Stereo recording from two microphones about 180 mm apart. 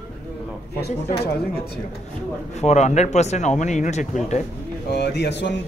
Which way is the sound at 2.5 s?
40° left (ahead or behind).